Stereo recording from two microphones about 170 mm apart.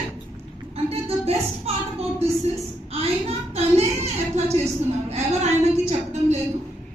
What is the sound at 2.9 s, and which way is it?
A woman's voice, 35° right (ahead or behind).